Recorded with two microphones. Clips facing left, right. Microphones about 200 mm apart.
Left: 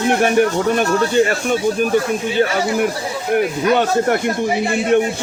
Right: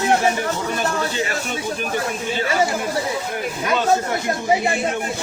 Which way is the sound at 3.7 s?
60° left (ahead or behind).